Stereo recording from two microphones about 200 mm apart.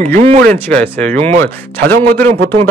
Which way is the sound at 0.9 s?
10° left (ahead or behind).